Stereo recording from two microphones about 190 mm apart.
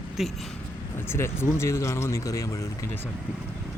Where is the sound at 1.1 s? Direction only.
15° left (ahead or behind).